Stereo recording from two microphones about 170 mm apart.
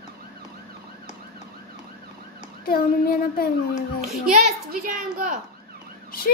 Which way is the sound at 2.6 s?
60° left (ahead or behind).